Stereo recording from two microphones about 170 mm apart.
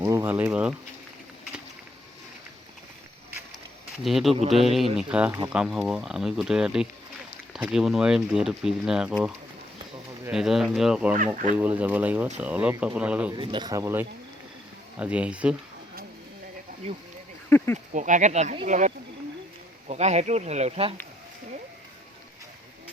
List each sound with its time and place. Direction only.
0.0 s insect: 20° right (ahead or behind)
4.0 s speech: centre (ahead or behind)
13.3 s speech: 30° right (ahead or behind); by 15.5 s 5° right (ahead or behind)
17.5 s speech: 15° left (ahead or behind)
17.9 s speech: 50° right (ahead or behind)